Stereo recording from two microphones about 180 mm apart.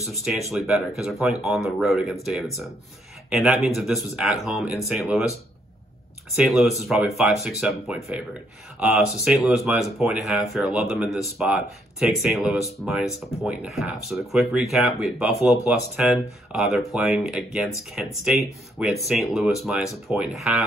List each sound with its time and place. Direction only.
0.0 s speech: centre (ahead or behind)
6.4 s speech: centre (ahead or behind)